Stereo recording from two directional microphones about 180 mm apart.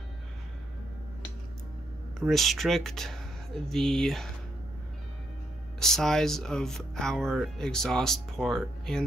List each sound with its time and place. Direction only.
2.1 s speech: centre (ahead or behind)
5.8 s speech: centre (ahead or behind)